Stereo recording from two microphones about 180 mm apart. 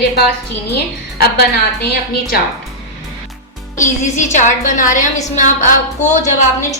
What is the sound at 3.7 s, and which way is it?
A woman's voice, 45° left (ahead or behind).